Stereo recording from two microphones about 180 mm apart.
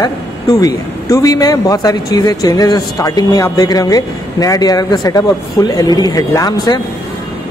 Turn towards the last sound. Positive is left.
turn(degrees=20)  # may be behind; listen again after turning